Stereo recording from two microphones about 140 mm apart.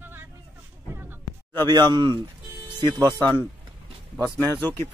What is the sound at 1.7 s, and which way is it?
Speech, 30° right (ahead or behind).